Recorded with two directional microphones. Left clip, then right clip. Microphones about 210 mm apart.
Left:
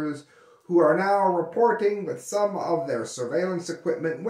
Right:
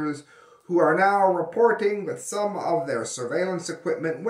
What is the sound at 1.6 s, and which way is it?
Speech, 10° right (ahead or behind).